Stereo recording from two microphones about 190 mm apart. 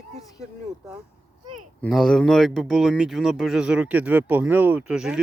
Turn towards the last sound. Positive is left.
turn(degrees=-5)  # may be behind; listen again after turning